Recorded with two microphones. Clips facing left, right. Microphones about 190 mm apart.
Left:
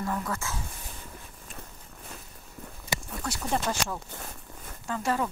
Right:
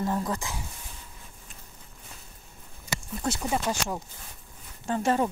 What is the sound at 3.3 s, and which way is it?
Speech, 25° right (ahead or behind).